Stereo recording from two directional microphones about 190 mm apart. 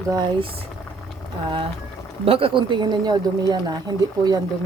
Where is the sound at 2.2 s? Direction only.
30° right (ahead or behind).